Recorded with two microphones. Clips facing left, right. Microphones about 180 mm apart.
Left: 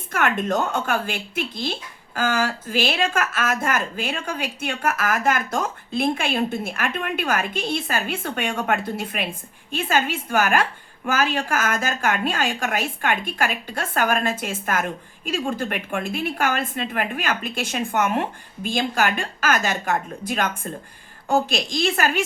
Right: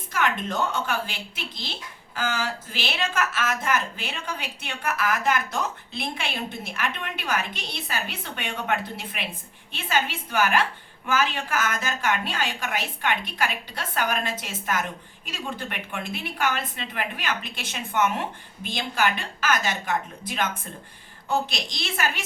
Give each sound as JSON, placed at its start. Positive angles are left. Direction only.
{"t": 0.1, "sound": "a woman's voice", "side_deg": 55}